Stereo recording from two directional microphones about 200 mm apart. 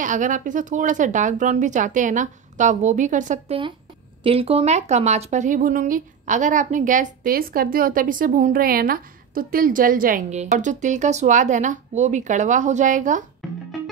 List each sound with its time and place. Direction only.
0.0 s speech: 40° right (ahead or behind)
4.2 s speech: 30° right (ahead or behind)